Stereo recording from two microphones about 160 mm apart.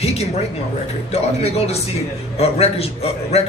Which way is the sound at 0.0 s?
40° left (ahead or behind).